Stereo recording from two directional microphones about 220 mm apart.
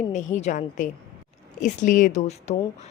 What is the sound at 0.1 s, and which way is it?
A woman's voice, 30° left (ahead or behind).